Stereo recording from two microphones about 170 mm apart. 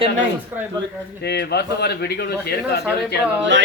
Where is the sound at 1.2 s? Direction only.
80° left.